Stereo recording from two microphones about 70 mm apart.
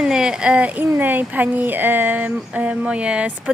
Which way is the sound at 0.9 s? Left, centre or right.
Right.